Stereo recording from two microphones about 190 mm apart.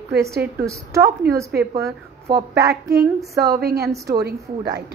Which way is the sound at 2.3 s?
60° right (ahead or behind).